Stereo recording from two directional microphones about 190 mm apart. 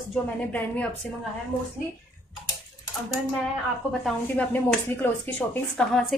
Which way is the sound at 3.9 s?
5° left (ahead or behind).